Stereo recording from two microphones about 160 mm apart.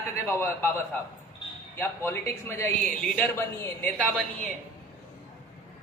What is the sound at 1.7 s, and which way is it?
A man's voice, 15° left (ahead or behind).